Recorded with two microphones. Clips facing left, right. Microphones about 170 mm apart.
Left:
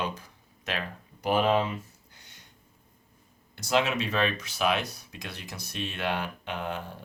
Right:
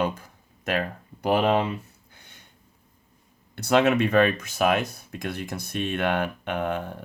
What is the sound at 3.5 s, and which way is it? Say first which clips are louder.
Speech: right 6 dB; 60° right (ahead or behind).